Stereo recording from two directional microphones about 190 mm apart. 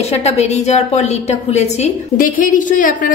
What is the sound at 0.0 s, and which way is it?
A woman's voice, 35° left (ahead or behind).